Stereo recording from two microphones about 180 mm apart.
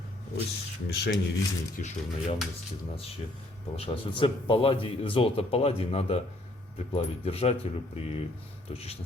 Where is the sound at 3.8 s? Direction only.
30° left (ahead or behind).